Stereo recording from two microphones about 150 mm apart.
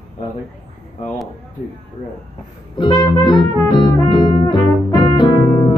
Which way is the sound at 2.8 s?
30° left (ahead or behind).